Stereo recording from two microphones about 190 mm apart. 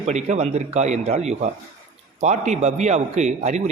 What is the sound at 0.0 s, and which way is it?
Speech, 35° right (ahead or behind).